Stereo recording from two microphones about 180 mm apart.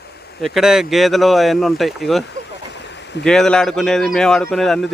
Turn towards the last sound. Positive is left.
turn(degrees=0)  # may be behind; listen again after turning